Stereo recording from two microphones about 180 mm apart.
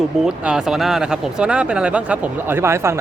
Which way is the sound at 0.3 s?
5° right (ahead or behind).